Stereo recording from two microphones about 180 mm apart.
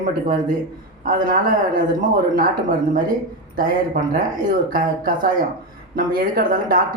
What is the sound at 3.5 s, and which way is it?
Speech, 50° right (ahead or behind).